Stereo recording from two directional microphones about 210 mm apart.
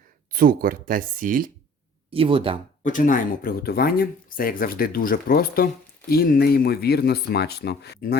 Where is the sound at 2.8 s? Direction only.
40° left (ahead or behind).